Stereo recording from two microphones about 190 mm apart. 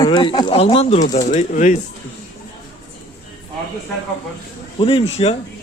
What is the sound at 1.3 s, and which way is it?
Speech, 40° left (ahead or behind).